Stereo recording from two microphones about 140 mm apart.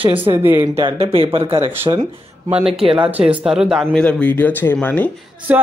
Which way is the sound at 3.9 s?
10° left (ahead or behind).